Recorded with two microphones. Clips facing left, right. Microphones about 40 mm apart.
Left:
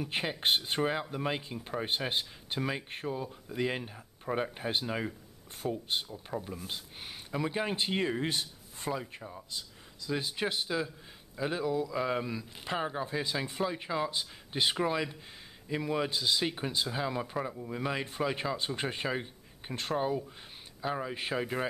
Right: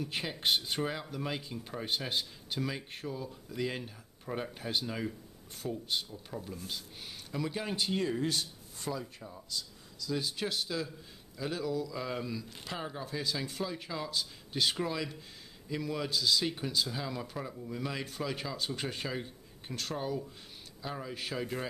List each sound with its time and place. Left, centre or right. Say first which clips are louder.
0.0 s speech: left 2 dB; left